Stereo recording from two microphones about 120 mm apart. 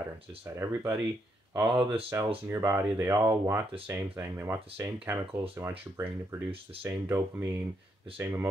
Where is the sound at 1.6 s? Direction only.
45° right (ahead or behind).